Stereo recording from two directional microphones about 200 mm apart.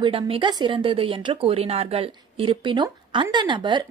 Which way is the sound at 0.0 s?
25° right (ahead or behind).